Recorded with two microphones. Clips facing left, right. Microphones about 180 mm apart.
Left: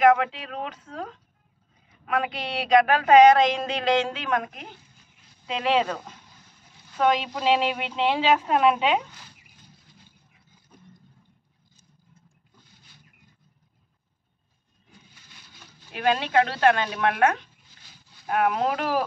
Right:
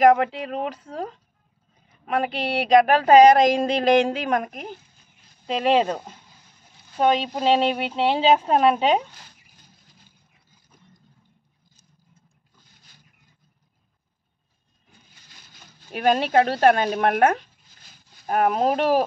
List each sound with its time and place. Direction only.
0.0 s speech: 40° right (ahead or behind)
5.8 s speech: 30° right (ahead or behind)
15.9 s speech: 40° right (ahead or behind)